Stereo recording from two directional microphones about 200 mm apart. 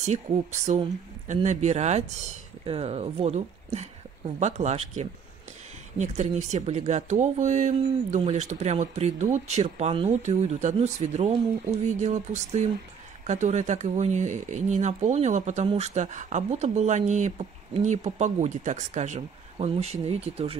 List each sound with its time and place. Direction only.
0.0 s speech: 35° right (ahead or behind)